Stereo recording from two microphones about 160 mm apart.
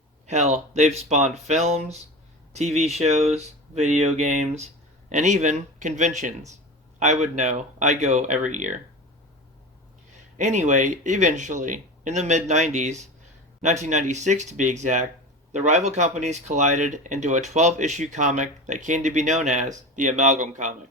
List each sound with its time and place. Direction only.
0.3 s speech: 45° right (ahead or behind)
10.3 s speech: 50° right (ahead or behind)